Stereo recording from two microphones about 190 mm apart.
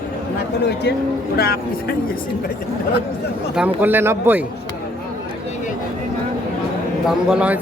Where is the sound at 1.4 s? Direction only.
55° left (ahead or behind).